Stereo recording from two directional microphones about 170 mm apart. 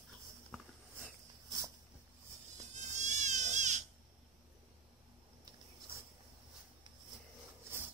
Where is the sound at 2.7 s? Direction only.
45° right (ahead or behind).